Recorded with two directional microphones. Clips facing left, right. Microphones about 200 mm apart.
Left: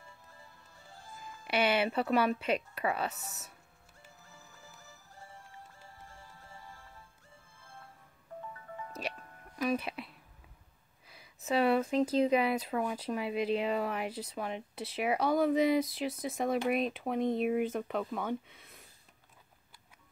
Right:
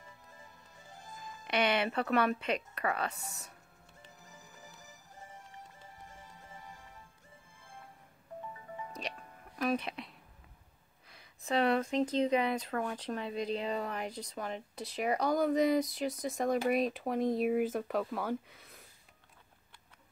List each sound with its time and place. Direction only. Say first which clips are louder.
0.0 s music: right 1 dB; 15° right (ahead or behind)
1.5 s speech: left 1 dB; 5° left (ahead or behind)
4.3 s music: right 1 dB; 15° right (ahead or behind)
9.6 s speech: left 1 dB; 5° left (ahead or behind)